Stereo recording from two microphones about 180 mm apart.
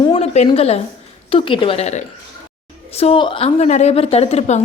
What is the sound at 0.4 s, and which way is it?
A woman's voice, 35° left (ahead or behind).